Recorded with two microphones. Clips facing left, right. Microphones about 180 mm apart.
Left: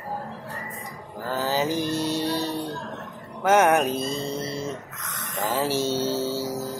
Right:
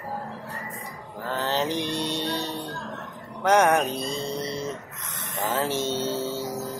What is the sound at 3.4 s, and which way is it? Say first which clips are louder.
Speech: left 1 dB; 5° left (ahead or behind).